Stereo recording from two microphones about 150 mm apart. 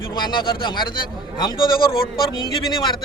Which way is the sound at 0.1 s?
30° left (ahead or behind).